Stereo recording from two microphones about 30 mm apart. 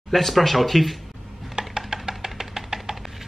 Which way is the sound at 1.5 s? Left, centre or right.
Right.